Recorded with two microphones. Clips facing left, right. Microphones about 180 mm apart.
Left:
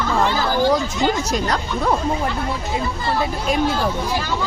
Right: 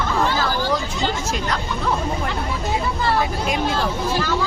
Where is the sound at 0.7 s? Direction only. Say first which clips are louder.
Left 4 dB; 35° left (ahead or behind).